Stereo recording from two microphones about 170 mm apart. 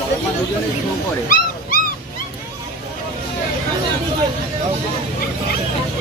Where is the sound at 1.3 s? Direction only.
60° left (ahead or behind).